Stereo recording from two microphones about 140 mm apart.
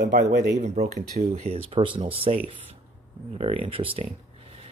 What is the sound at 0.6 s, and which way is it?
Speech, 55° right (ahead or behind).